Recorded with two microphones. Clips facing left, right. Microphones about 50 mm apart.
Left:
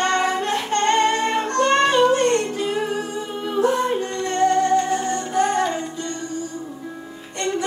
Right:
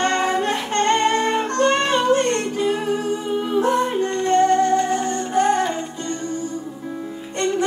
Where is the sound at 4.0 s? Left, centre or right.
Right.